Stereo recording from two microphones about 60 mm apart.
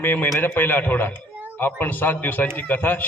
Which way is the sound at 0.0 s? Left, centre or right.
Left.